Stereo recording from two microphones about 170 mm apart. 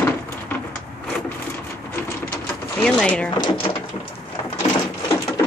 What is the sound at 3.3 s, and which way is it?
Speech, 25° left (ahead or behind).